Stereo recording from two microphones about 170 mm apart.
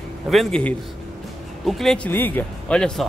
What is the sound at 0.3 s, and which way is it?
Speech, 5° left (ahead or behind).